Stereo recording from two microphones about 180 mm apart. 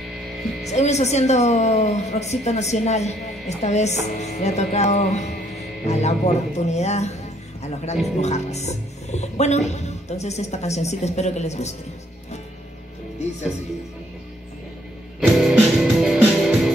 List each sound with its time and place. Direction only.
0.7 s a woman's voice: 40° left (ahead or behind)
15.1 s music: centre (ahead or behind)